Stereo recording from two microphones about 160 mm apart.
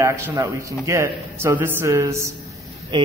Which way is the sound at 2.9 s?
30° right (ahead or behind).